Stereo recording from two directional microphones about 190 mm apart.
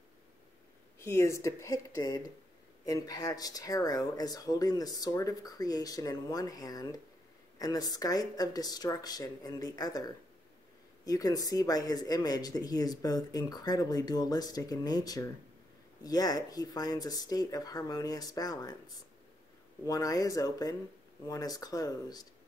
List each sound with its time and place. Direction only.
0.9 s speech: 15° left (ahead or behind)
19.8 s speech: 20° left (ahead or behind)